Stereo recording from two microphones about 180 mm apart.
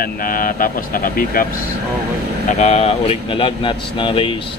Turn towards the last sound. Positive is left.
turn(degrees=30)  # may be behind; listen again after turning